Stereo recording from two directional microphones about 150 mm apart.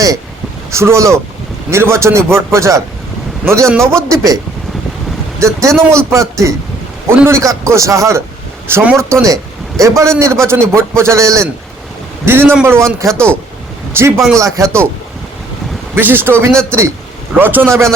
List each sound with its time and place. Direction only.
0.7 s a man's voice: 20° right (ahead or behind)
5.5 s a man's voice: 20° right (ahead or behind)
16.0 s a man's voice: 15° right (ahead or behind)
16.5 s speech: 5° left (ahead or behind)
17.4 s a man's voice: 15° right (ahead or behind)